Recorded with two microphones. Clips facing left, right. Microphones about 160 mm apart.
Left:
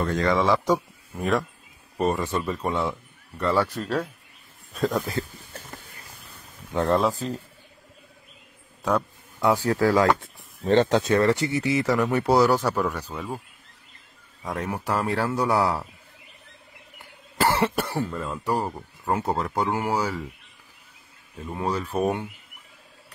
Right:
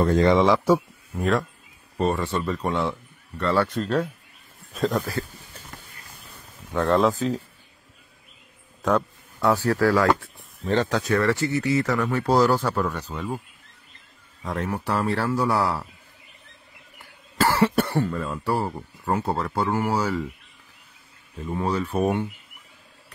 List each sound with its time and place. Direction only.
0.0 s a man's voice: 30° right (ahead or behind)
0.7 s a man's voice: centre (ahead or behind)
2.0 s speech: 15° left (ahead or behind)
6.9 s speech: centre (ahead or behind)
8.8 s speech: 10° left (ahead or behind)
10.6 s speech: 30° left (ahead or behind); by 13.3 s 10° left (ahead or behind)
14.4 s speech: 10° left (ahead or behind)
17.0 s cough: 20° left (ahead or behind)
17.7 s speech: centre (ahead or behind)
18.4 s speech: 20° left (ahead or behind)
21.5 s speech: 10° left (ahead or behind)